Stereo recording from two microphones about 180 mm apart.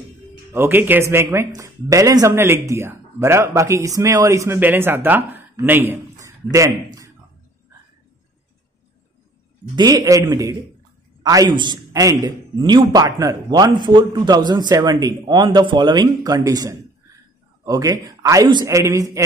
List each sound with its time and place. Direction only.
0.5 s speech: 10° right (ahead or behind)
9.8 s a man's voice: 20° right (ahead or behind)